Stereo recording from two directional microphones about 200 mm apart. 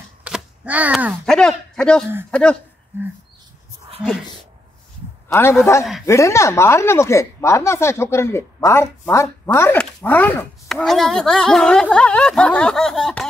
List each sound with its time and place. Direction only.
0.2 s a woman's voice: 5° right (ahead or behind)
5.3 s a woman's voice: 15° left (ahead or behind)